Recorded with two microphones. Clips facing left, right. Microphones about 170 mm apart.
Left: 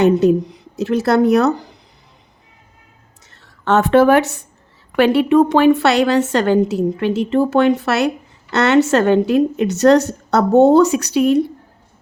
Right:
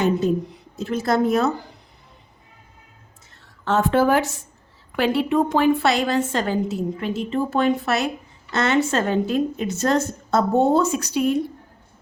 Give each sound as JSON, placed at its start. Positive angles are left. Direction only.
{"t": 0.0, "sound": "speech", "side_deg": 75}
{"t": 3.6, "sound": "a woman's voice", "side_deg": 75}